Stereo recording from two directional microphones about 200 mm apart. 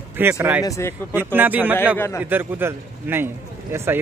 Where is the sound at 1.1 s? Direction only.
10° right (ahead or behind).